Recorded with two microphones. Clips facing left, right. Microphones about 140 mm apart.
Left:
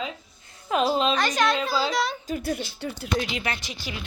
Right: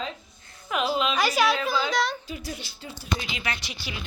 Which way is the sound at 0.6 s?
35° left (ahead or behind).